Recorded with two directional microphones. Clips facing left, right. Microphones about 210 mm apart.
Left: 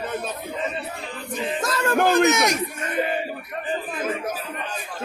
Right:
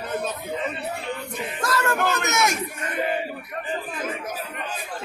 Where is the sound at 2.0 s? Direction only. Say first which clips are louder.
Left 6 dB; 35° left (ahead or behind).